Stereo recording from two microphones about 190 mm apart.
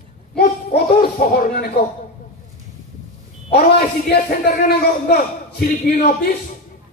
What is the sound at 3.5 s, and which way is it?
A man's voice, 55° left (ahead or behind).